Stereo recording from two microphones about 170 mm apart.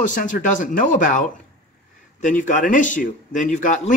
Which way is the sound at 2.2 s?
50° left (ahead or behind).